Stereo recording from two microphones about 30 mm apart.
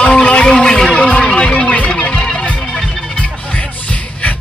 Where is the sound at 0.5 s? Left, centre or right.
Left.